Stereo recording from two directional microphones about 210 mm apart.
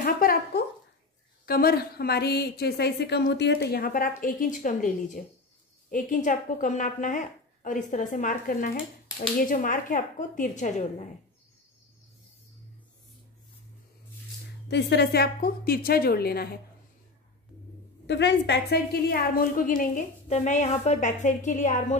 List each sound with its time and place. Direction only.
0.0 s a sound: 45° left (ahead or behind)
1.4 s a woman's voice: 45° left (ahead or behind)
14.7 s a woman's voice: 55° left (ahead or behind)
18.0 s a woman's voice: 55° left (ahead or behind); by 21.8 s 35° left (ahead or behind)